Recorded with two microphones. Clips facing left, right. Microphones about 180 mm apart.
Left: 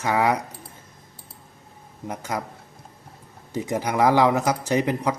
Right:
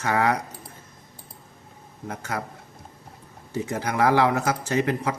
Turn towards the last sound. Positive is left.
turn(degrees=15)  # may be behind; listen again after turning